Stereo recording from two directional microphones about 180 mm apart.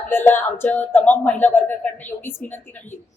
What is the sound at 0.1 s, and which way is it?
A woman's voice, 10° left (ahead or behind).